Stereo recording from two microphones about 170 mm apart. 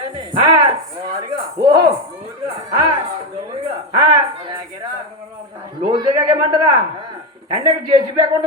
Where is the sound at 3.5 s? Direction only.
30° right (ahead or behind).